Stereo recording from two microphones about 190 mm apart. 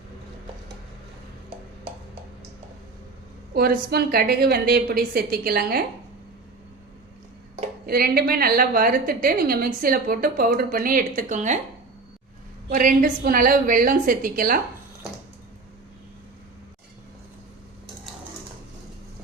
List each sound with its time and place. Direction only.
3.5 s a woman's voice: 50° right (ahead or behind)
7.9 s a woman's voice: 50° right (ahead or behind)
12.7 s a woman's voice: 45° right (ahead or behind)